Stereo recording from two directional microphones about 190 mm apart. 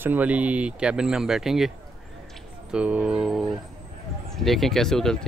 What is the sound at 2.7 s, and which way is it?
Speech, 5° right (ahead or behind).